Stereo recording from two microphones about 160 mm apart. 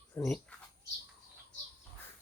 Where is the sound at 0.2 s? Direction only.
10° left (ahead or behind).